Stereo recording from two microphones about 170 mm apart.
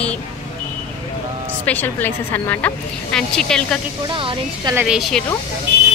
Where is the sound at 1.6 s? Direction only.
10° left (ahead or behind).